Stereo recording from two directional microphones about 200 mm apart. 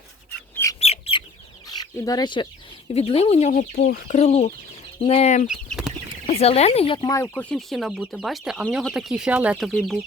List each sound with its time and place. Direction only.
0.5 s bird: 15° left (ahead or behind)
0.8 s chicken: 30° left (ahead or behind)
1.6 s speech: 20° left (ahead or behind); by 5.5 s 35° left (ahead or behind)
5.5 s chicken: centre (ahead or behind)
6.4 s speech: 30° left (ahead or behind)
7.2 s speech: 5° left (ahead or behind)